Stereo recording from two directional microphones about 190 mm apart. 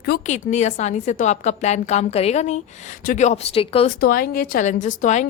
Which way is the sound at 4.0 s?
50° left (ahead or behind).